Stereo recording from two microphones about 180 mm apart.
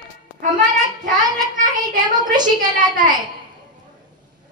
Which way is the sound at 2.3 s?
25° right (ahead or behind).